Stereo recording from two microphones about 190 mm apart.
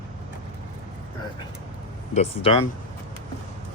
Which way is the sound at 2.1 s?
30° left (ahead or behind).